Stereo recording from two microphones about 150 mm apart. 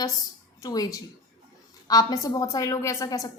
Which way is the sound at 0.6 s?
25° left (ahead or behind).